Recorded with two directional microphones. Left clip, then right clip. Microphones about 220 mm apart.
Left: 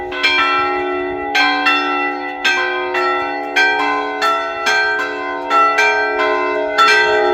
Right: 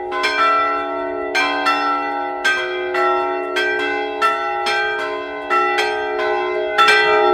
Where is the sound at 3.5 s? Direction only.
5° right (ahead or behind).